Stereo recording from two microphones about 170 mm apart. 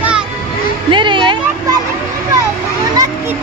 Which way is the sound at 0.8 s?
30° right (ahead or behind).